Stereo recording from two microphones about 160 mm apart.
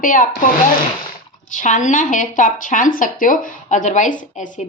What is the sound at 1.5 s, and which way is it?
Speech, 55° left (ahead or behind).